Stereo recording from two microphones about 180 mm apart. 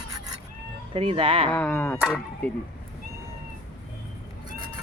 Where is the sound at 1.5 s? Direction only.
10° left (ahead or behind).